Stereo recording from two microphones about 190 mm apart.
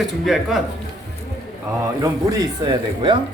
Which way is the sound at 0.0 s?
Centre (ahead or behind).